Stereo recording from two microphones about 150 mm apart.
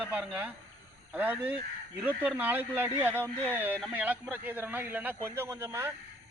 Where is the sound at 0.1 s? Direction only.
10° right (ahead or behind).